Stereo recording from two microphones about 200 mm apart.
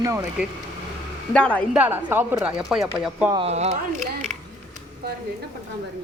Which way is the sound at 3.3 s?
30° right (ahead or behind).